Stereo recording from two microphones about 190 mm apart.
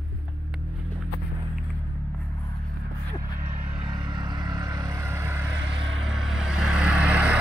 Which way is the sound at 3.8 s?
25° right (ahead or behind).